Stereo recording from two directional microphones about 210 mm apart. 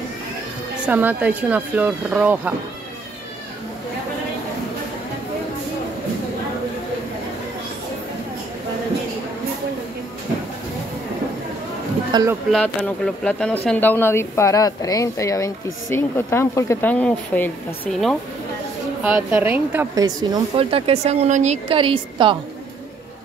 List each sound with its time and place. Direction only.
0.8 s speech: 5° right (ahead or behind)
12.1 s speech: 20° right (ahead or behind)
12.4 s a woman's voice: 5° left (ahead or behind)
19.0 s speech: 10° right (ahead or behind); by 22.4 s 25° right (ahead or behind)